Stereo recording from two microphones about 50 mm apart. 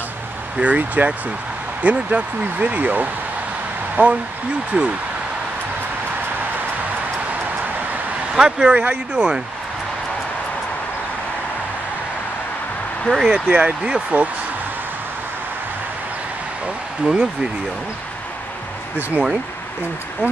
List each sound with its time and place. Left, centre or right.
0.6 s speech: right
8.4 s speech: centre
8.7 s speech: right
13.1 s speech: left
13.5 s speech: right
17.0 s speech: centre
18.9 s speech: right